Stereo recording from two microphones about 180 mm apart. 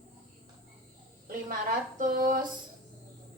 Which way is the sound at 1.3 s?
50° right (ahead or behind).